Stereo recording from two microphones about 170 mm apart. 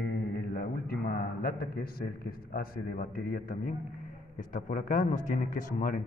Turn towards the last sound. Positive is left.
turn(degrees=55)  # may be behind; listen again after turning